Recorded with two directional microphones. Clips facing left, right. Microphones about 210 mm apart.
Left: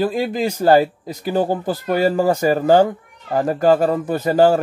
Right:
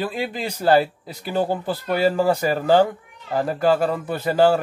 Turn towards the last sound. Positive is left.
turn(degrees=45)  # may be behind; listen again after turning